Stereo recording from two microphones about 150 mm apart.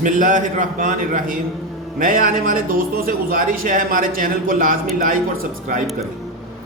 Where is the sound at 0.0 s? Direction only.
60° right (ahead or behind).